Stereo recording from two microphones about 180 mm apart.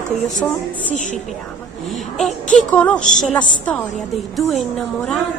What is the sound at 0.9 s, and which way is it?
Speech, 45° left (ahead or behind).